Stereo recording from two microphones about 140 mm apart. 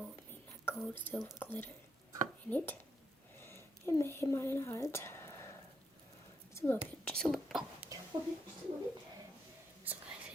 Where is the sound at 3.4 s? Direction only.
20° left (ahead or behind).